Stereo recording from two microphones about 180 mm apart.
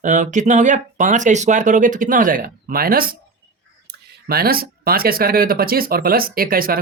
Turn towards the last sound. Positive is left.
turn(degrees=-55)  # may be behind; listen again after turning